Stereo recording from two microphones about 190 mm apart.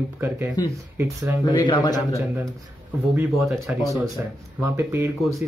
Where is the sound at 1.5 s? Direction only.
20° left (ahead or behind).